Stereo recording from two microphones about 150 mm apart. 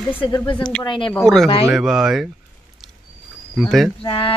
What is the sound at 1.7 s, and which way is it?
Speech, 5° right (ahead or behind).